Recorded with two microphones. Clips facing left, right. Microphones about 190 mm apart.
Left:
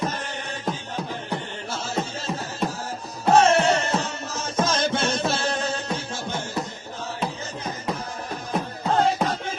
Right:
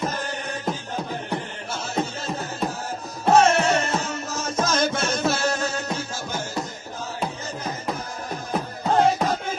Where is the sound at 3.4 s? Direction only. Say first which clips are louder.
Left 1 dB; 30° left (ahead or behind).